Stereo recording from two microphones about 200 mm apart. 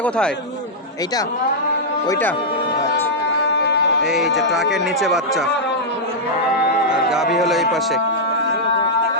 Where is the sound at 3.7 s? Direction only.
60° left (ahead or behind).